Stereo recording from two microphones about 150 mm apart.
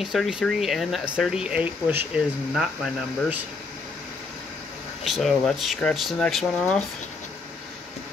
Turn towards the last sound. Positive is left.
turn(degrees=5)  # may be behind; listen again after turning